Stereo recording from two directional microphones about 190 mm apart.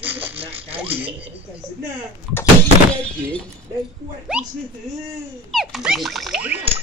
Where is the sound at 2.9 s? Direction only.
5° left (ahead or behind).